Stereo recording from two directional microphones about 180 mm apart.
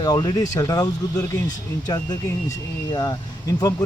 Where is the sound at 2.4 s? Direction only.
20° left (ahead or behind).